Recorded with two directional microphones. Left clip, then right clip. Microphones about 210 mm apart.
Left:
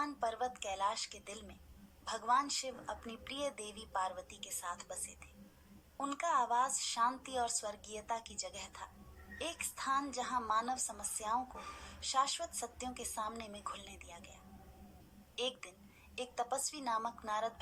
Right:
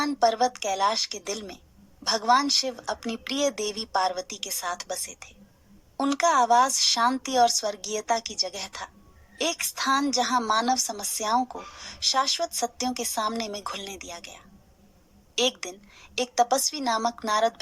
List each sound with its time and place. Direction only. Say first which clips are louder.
0.0 s a woman's voice: right 15 dB; 45° right (ahead or behind)